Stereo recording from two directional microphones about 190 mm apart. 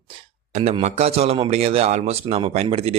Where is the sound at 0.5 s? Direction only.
35° right (ahead or behind).